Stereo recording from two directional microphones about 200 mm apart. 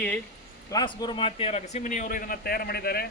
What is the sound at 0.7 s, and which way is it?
A man's voice, 20° left (ahead or behind).